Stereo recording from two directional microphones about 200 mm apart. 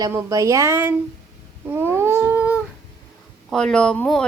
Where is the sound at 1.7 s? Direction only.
10° right (ahead or behind).